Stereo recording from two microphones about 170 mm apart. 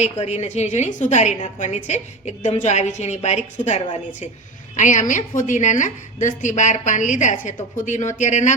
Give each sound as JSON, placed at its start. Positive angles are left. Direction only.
{"t": 0.0, "sound": "a woman's voice", "side_deg": 40}
{"t": 4.8, "sound": "a woman's voice", "side_deg": 45}